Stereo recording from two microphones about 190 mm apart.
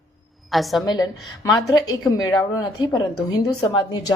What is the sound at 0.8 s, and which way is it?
A woman's voice, 20° left (ahead or behind).